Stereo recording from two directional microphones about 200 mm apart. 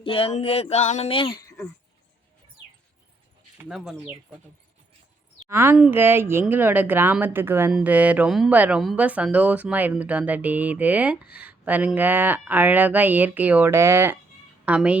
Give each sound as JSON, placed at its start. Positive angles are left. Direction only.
{"t": 0.0, "sound": "speech", "side_deg": 30}
{"t": 3.6, "sound": "speech", "side_deg": 0}
{"t": 5.5, "sound": "a woman's voice", "side_deg": -10}